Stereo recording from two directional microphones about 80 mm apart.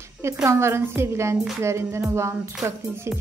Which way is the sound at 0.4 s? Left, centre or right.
Right.